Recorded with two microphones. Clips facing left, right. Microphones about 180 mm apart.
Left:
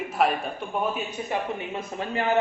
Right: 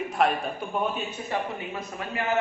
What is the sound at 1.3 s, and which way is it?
A woman's voice, 25° left (ahead or behind).